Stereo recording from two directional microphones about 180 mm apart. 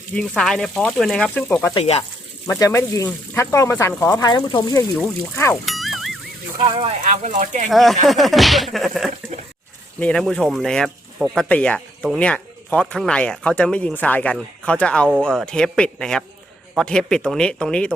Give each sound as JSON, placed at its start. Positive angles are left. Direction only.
{"t": 0.2, "sound": "speech", "side_deg": 5}
{"t": 1.7, "sound": "speech", "side_deg": 35}
{"t": 2.5, "sound": "speech", "side_deg": 15}
{"t": 5.6, "sound": "music", "side_deg": 0}
{"t": 6.6, "sound": "speech", "side_deg": -30}
{"t": 7.0, "sound": "speech", "side_deg": -40}
{"t": 7.7, "sound": "speech", "side_deg": 0}